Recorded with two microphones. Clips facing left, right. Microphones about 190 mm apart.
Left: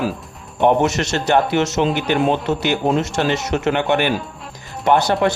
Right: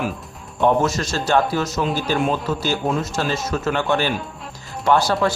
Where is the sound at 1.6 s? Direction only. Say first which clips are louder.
Left 4 dB; 25° left (ahead or behind).